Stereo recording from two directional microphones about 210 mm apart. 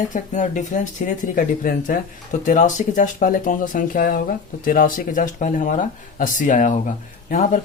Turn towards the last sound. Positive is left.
turn(degrees=40)  # may be behind; listen again after turning